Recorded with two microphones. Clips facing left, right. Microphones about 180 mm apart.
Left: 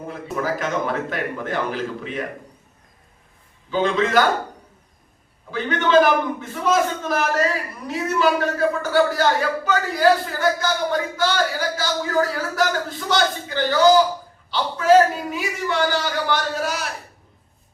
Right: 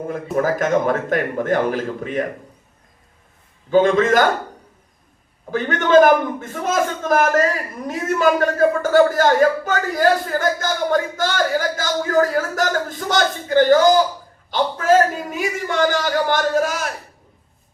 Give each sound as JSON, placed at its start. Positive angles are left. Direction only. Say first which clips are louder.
{"t": 0.1, "sound": "a man's voice", "louder": "right 5 dB", "side_deg": -50}
{"t": 3.7, "sound": "a man's voice", "louder": "right 6 dB", "side_deg": -50}
{"t": 5.5, "sound": "a man's voice", "louder": "right 3 dB", "side_deg": -50}